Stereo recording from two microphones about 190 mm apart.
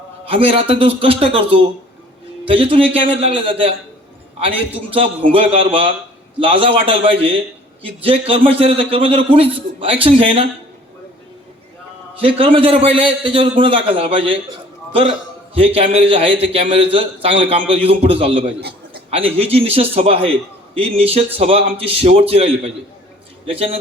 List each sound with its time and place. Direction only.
0.3 s a man's voice: 30° right (ahead or behind)
5.3 s a man's voice: 30° right (ahead or behind)
12.2 s a man's voice: 30° right (ahead or behind)
15.5 s a man's voice: 30° right (ahead or behind)